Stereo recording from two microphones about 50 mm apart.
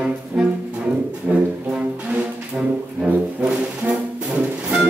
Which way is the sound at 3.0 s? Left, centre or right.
Right.